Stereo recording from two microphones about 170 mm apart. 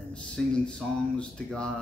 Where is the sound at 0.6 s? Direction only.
5° left (ahead or behind).